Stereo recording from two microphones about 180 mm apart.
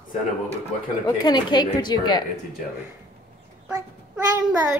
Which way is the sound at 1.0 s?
25° left (ahead or behind).